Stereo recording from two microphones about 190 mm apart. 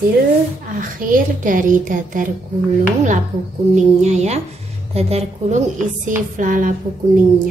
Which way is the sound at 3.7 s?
35° right (ahead or behind).